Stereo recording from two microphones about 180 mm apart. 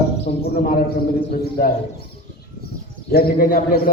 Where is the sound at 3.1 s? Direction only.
55° left (ahead or behind).